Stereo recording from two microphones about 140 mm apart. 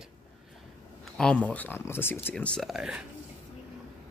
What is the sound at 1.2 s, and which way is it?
Speech, 10° left (ahead or behind).